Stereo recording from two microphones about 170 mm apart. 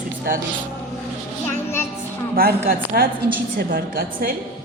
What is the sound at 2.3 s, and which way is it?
A woman's voice, 60° right (ahead or behind).